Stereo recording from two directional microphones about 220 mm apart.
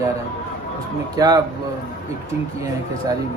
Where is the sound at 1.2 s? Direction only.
15° right (ahead or behind).